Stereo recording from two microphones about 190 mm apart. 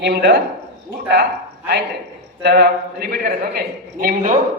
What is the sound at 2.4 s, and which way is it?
A man's voice, 55° right (ahead or behind).